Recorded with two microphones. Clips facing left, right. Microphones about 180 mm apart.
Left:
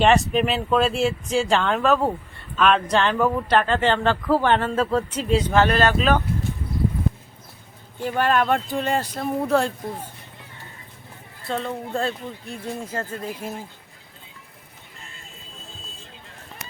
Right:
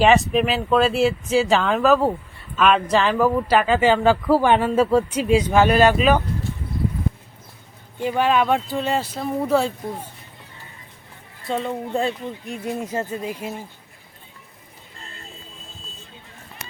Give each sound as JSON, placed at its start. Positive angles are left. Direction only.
{"t": 0.0, "sound": "speech", "side_deg": 0}
{"t": 8.0, "sound": "speech", "side_deg": -10}
{"t": 11.4, "sound": "speech", "side_deg": -5}
{"t": 12.5, "sound": "speech", "side_deg": -20}